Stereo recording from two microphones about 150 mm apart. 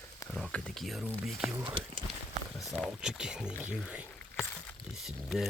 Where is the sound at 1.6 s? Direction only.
35° right (ahead or behind).